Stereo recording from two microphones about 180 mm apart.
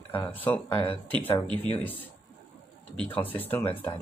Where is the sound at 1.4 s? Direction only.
30° right (ahead or behind).